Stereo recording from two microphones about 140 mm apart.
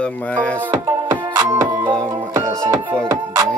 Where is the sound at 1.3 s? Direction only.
30° right (ahead or behind).